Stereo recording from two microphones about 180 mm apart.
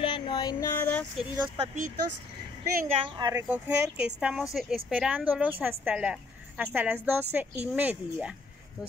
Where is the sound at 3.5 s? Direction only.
10° right (ahead or behind).